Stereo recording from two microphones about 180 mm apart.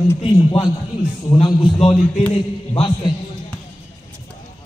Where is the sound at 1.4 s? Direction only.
30° left (ahead or behind).